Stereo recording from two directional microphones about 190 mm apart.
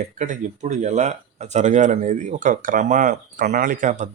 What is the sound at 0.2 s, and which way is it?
Speech, 40° right (ahead or behind).